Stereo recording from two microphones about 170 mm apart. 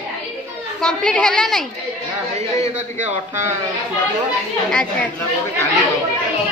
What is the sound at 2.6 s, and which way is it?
Speech, 40° right (ahead or behind).